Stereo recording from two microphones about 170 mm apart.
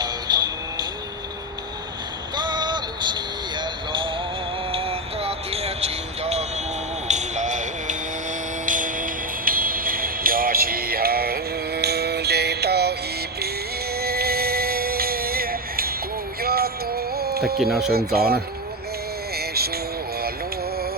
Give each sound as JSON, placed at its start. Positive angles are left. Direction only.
{"t": 0.0, "sound": "music", "side_deg": -25}
{"t": 2.3, "sound": "a sound", "side_deg": -25}
{"t": 4.7, "sound": "music", "side_deg": -35}
{"t": 17.6, "sound": "speech", "side_deg": 0}
{"t": 18.1, "sound": "speech", "side_deg": -65}
{"t": 19.4, "sound": "music", "side_deg": -65}